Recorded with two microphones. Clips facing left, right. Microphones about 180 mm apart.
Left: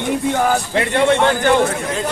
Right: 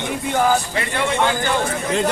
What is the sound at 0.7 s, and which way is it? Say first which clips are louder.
Speech: left 6 dB; 65° left (ahead or behind).